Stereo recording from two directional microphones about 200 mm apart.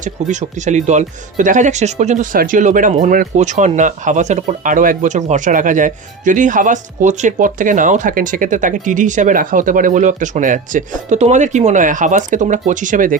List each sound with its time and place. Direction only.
0.0 s speech: 35° right (ahead or behind)